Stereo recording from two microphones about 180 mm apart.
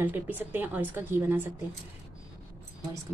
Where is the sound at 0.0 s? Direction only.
10° right (ahead or behind).